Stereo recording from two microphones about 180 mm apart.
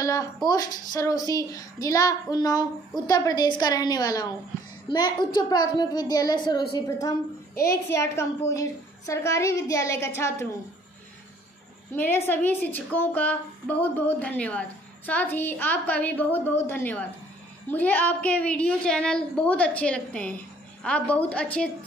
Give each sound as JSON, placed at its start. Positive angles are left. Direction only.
{"t": 0.0, "sound": "a woman's voice", "side_deg": 20}
{"t": 11.9, "sound": "a woman's voice", "side_deg": 10}